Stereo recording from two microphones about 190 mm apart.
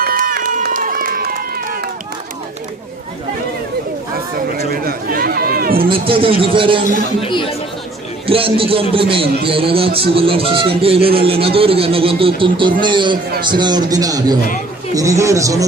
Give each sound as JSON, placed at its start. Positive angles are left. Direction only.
{"t": 0.0, "sound": "run", "side_deg": -50}
{"t": 4.4, "sound": "chatter", "side_deg": -50}
{"t": 5.9, "sound": "speech", "side_deg": -30}
{"t": 7.2, "sound": "speech", "side_deg": 25}
{"t": 8.3, "sound": "speech", "side_deg": -30}